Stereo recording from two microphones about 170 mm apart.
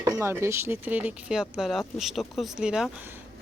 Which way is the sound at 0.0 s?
15° right (ahead or behind).